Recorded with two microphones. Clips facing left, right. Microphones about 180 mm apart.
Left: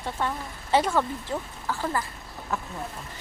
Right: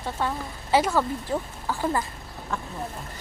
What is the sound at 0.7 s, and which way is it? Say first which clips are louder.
Speech: right 1 dB; 5° right (ahead or behind).